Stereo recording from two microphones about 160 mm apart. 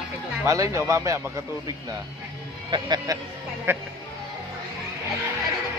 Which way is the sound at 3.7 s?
15° right (ahead or behind).